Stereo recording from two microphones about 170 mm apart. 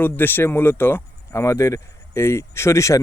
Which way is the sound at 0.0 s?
10° left (ahead or behind).